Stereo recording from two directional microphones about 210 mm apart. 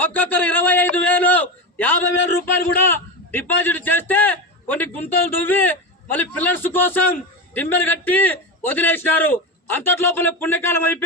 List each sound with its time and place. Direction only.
0.0 s a man's voice: 10° left (ahead or behind)